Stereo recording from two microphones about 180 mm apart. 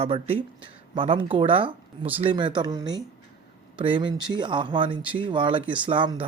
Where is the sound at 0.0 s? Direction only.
30° right (ahead or behind).